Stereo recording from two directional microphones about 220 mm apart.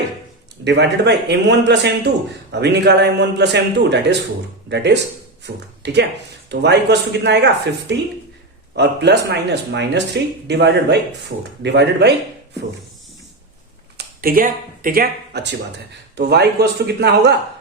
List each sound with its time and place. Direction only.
0.6 s a man's voice: 50° right (ahead or behind)
13.9 s a man's voice: 45° right (ahead or behind)